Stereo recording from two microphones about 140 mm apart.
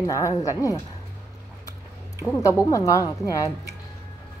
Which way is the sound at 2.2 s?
20° left (ahead or behind).